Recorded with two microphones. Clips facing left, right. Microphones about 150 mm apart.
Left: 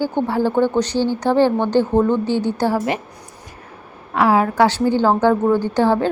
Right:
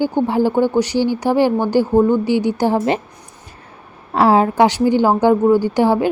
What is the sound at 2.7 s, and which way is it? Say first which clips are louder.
Speech: right 3 dB; 30° right (ahead or behind).